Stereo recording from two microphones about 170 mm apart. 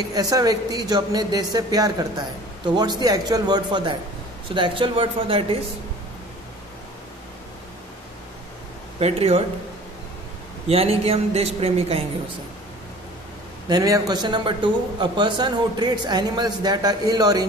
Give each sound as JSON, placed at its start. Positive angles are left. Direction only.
{"t": 0.1, "sound": "a man's voice", "side_deg": -20}
{"t": 9.0, "sound": "a man's voice", "side_deg": -35}
{"t": 10.7, "sound": "a man's voice", "side_deg": -35}
{"t": 13.7, "sound": "a man's voice", "side_deg": -20}